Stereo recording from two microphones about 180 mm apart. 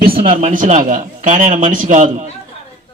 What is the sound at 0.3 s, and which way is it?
A man's voice, 45° right (ahead or behind).